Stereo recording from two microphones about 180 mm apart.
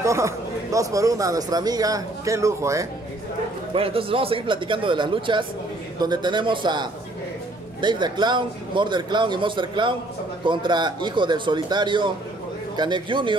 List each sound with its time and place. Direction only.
0.0 s speech: 15° right (ahead or behind)
3.7 s speech: 30° right (ahead or behind)